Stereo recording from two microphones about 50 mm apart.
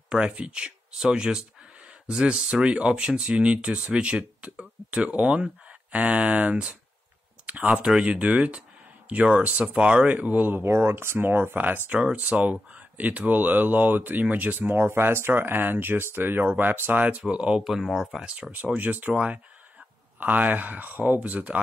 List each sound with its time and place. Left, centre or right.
0.3 s speech: right
10.0 s speech: right
10.7 s speech: right
11.9 s speech: right
17.0 s speech: right
17.6 s speech: centre
18.2 s speech: right
18.5 s speech: right
20.2 s speech: right